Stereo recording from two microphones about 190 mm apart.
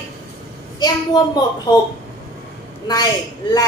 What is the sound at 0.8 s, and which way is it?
Speech, 20° left (ahead or behind).